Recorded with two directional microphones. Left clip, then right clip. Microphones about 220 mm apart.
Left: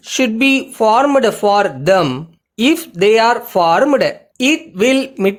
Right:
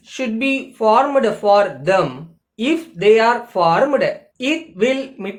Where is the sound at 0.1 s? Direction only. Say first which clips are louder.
Left 7 dB; 50° left (ahead or behind).